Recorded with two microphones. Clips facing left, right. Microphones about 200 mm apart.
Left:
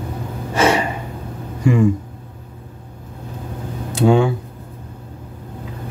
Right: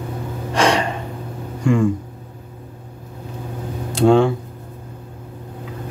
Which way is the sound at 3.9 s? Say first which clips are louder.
Right 1 dB; 5° left (ahead or behind).